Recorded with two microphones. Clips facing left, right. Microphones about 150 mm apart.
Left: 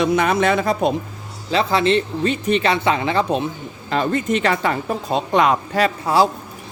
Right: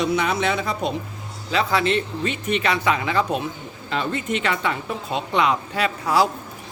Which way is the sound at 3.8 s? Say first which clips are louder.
Left 5 dB; 45° left (ahead or behind).